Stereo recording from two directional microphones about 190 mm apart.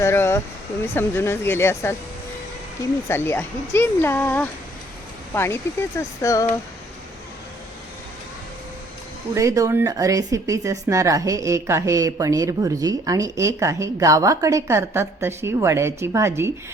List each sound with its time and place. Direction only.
0.0 s speech: 15° left (ahead or behind)
3.1 s speech: 10° left (ahead or behind)
9.3 s speech: 15° right (ahead or behind)